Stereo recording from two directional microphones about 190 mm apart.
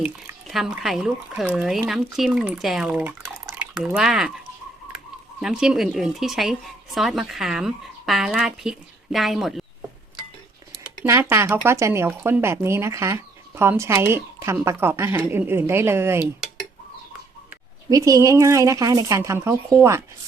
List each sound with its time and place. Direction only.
0.4 s speech: centre (ahead or behind)
5.4 s speech: 5° right (ahead or behind)
10.8 s speech: 15° right (ahead or behind)
17.8 s speech: 20° right (ahead or behind)